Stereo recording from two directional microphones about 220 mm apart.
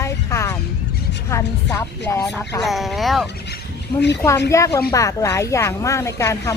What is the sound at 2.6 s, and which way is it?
Speech, centre (ahead or behind).